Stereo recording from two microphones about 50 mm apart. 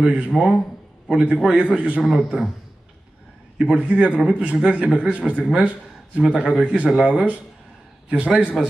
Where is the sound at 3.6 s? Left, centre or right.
Right.